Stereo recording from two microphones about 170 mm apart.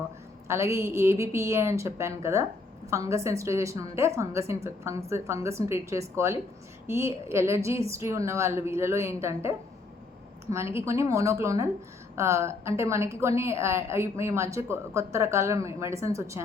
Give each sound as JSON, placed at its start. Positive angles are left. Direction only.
{"t": 0.4, "sound": "a woman's voice", "side_deg": -15}